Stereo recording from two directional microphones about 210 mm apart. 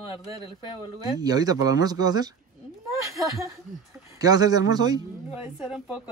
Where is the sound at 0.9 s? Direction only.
20° right (ahead or behind).